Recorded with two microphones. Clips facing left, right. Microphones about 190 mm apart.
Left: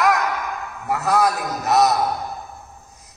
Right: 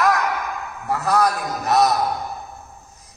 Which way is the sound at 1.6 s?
Centre (ahead or behind).